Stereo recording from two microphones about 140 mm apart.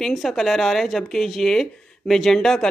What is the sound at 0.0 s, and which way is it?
Speech, centre (ahead or behind).